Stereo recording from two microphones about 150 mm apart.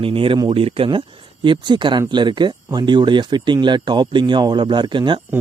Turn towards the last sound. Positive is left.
turn(degrees=-30)  # may be behind; listen again after turning